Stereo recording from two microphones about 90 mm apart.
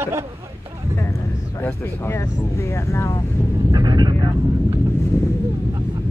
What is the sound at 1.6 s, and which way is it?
Speech, 25° left (ahead or behind).